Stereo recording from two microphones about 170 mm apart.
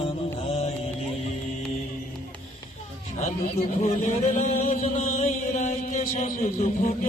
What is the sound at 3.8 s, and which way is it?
Chant, 45° left (ahead or behind).